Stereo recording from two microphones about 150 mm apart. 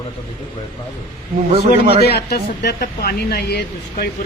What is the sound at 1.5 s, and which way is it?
Speech, 40° right (ahead or behind).